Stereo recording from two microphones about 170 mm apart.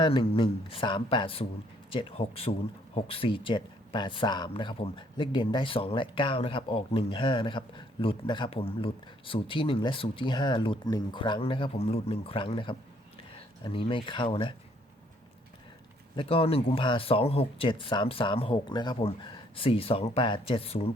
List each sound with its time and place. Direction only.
0.0 s speech: 30° left (ahead or behind)
16.1 s speech: 35° left (ahead or behind)